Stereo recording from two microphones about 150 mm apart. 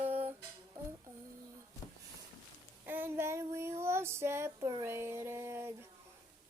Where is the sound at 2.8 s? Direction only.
15° right (ahead or behind).